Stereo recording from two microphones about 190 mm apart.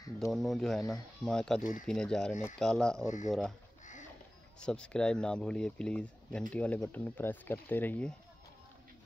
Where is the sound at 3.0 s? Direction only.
40° left (ahead or behind).